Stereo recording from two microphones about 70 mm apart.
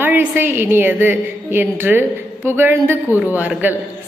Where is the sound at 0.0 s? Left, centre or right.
Right.